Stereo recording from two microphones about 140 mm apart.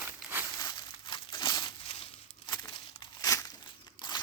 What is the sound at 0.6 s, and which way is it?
Crumpling, 30° left (ahead or behind).